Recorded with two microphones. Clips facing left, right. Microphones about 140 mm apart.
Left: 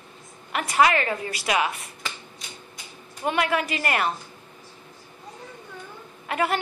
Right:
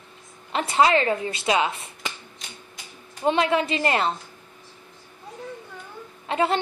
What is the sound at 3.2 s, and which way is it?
Speech, 25° right (ahead or behind).